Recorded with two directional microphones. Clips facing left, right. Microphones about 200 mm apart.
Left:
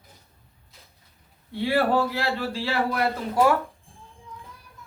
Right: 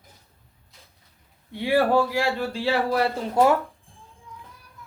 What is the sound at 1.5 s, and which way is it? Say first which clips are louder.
A man's voice: right 2 dB; 15° right (ahead or behind).